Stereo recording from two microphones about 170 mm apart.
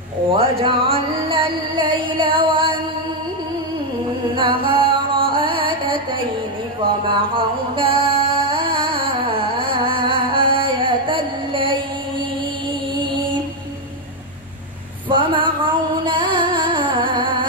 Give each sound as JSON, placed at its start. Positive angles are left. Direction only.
{"t": 0.4, "sound": "music", "side_deg": -35}
{"t": 4.4, "sound": "music", "side_deg": -30}
{"t": 12.9, "sound": "mantra", "side_deg": -30}
{"t": 15.0, "sound": "music", "side_deg": -30}